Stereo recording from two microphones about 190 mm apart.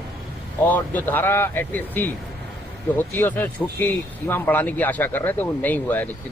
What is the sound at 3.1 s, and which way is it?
Speech, 10° left (ahead or behind).